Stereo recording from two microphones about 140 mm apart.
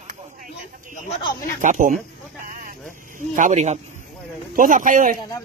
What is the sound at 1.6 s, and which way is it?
Speech, 70° right (ahead or behind).